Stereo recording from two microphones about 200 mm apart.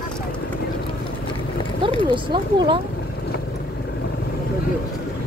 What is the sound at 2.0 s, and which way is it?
Speech, 25° right (ahead or behind).